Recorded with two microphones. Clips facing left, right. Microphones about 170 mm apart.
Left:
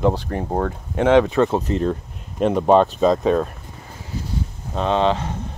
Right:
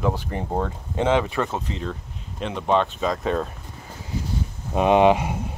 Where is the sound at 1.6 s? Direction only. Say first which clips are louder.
Left 9 dB; 45° left (ahead or behind).